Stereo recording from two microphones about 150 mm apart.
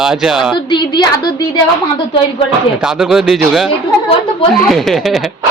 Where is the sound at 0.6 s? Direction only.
30° left (ahead or behind).